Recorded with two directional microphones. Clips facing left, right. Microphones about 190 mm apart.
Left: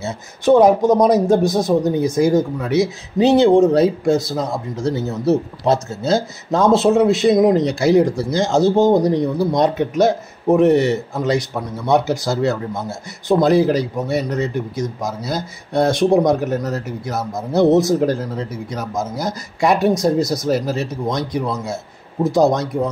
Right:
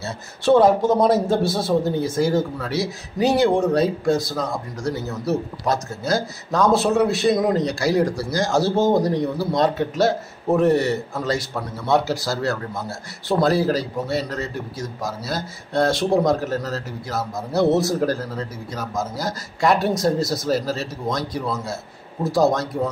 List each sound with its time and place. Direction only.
0.0 s a man's voice: 15° left (ahead or behind)
19.9 s speech: centre (ahead or behind)
20.4 s speech: 20° left (ahead or behind)